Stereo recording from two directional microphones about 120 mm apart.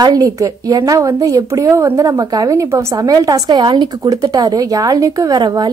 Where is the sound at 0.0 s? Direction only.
30° right (ahead or behind).